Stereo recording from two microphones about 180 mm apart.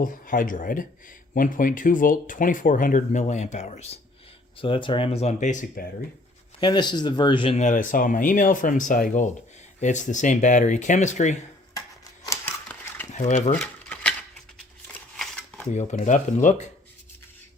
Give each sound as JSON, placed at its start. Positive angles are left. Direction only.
{"t": 0.0, "sound": "speech", "side_deg": 50}
{"t": 6.6, "sound": "speech", "side_deg": 25}
{"t": 12.3, "sound": "dog", "side_deg": 15}
{"t": 13.1, "sound": "speech", "side_deg": 40}
{"t": 13.5, "sound": "a sound", "side_deg": 10}
{"t": 15.1, "sound": "shuffling cards", "side_deg": 5}
{"t": 15.7, "sound": "speech", "side_deg": 40}